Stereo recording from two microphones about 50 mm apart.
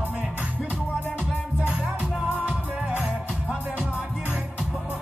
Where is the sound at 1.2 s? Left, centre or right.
Right.